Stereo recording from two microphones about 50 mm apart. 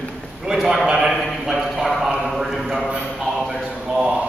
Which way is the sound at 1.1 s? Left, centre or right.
Centre.